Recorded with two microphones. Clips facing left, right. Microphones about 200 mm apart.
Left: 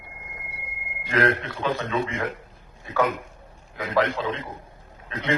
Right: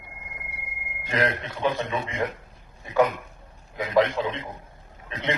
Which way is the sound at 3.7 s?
15° right (ahead or behind).